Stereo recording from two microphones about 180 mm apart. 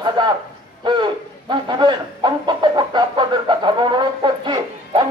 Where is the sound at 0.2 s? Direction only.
25° right (ahead or behind).